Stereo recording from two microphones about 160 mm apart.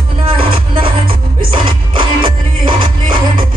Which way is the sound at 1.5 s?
30° right (ahead or behind).